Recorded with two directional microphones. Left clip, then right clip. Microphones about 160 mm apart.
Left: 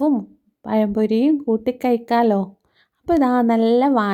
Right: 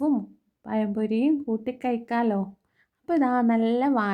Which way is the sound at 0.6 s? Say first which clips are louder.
Left 9 dB; 30° left (ahead or behind).